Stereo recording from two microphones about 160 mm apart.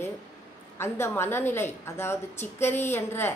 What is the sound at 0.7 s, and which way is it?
A woman's voice, 15° left (ahead or behind).